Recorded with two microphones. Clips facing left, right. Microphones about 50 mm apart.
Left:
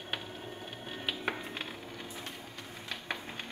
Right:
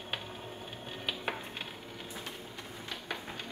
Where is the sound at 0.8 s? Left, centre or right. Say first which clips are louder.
Left 1 dB; centre.